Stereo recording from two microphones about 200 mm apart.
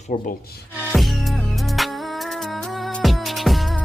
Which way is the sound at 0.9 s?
Centre (ahead or behind).